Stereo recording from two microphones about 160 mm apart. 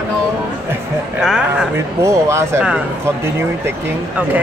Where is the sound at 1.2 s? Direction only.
5° right (ahead or behind).